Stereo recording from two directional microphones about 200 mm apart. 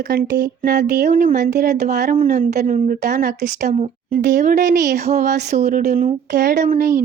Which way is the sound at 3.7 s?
40° right (ahead or behind).